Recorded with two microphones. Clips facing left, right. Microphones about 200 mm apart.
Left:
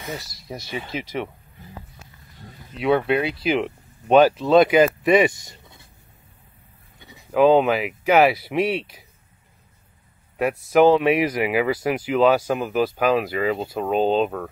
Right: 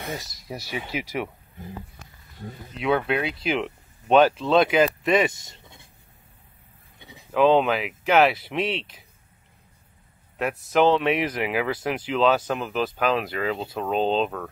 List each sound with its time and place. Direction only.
0.2 s speech: 10° right (ahead or behind)
2.8 s speech: centre (ahead or behind)
5.3 s a sound: 25° right (ahead or behind)
7.3 s speech: 5° left (ahead or behind)
10.3 s speech: 10° left (ahead or behind)